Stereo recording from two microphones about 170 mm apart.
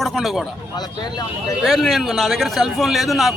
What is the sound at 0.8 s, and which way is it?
Speech, 25° left (ahead or behind).